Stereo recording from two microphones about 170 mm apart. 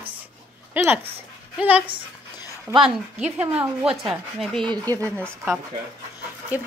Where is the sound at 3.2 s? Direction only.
10° right (ahead or behind).